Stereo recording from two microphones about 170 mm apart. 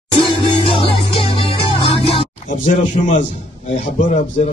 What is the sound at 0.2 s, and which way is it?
Music, 30° left (ahead or behind).